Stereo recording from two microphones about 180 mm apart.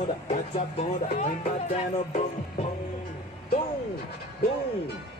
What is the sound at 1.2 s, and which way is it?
Speech, 35° left (ahead or behind).